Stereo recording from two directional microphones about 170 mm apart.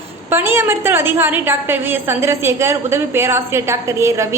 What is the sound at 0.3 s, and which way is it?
A woman's voice, 15° right (ahead or behind).